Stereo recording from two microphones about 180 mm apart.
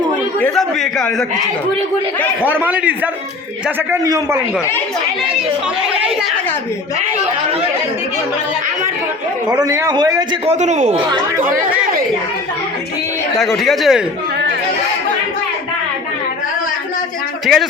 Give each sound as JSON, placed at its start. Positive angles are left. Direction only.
{"t": 0.3, "sound": "a man's voice", "side_deg": 5}
{"t": 2.4, "sound": "a man's voice", "side_deg": -10}
{"t": 4.0, "sound": "a man's voice", "side_deg": -20}
{"t": 9.5, "sound": "a man's voice", "side_deg": -20}
{"t": 10.4, "sound": "a man's voice", "side_deg": -40}
{"t": 13.4, "sound": "speech", "side_deg": 0}
{"t": 17.4, "sound": "speech", "side_deg": 0}